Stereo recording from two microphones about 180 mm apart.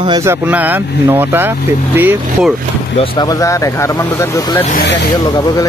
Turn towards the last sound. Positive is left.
turn(degrees=20)  # may be behind; listen again after turning